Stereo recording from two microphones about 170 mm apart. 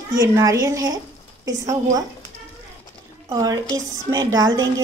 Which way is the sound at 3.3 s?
20° right (ahead or behind).